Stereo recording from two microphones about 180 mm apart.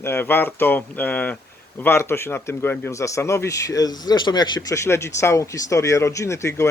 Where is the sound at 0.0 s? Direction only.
10° left (ahead or behind).